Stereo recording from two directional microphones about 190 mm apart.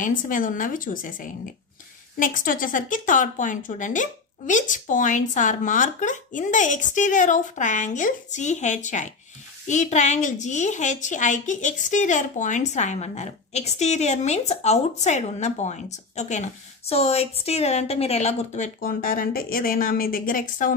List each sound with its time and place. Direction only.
0.0 s a woman's voice: 45° left (ahead or behind)